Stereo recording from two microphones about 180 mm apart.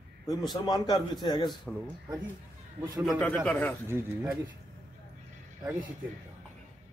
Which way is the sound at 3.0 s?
5° left (ahead or behind).